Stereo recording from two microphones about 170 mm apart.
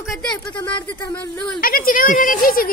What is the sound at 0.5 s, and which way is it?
Speech, 25° left (ahead or behind).